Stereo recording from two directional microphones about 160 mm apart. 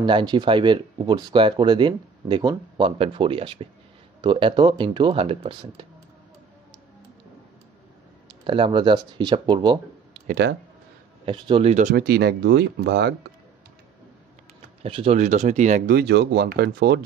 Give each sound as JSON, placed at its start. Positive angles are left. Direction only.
{"t": 0.0, "sound": "speech", "side_deg": -30}
{"t": 8.5, "sound": "speech", "side_deg": -35}
{"t": 10.2, "sound": "speech", "side_deg": -75}
{"t": 11.2, "sound": "speech", "side_deg": -30}
{"t": 11.7, "sound": "speech", "side_deg": -60}
{"t": 14.8, "sound": "speech", "side_deg": -35}
{"t": 15.1, "sound": "speech", "side_deg": -50}
{"t": 15.9, "sound": "speech", "side_deg": -90}